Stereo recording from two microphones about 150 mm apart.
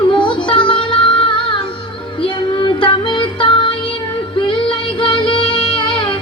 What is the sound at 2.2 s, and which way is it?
Music, 35° left (ahead or behind).